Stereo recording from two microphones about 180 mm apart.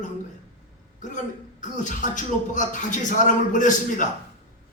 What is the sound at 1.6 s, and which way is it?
Speech, 45° left (ahead or behind).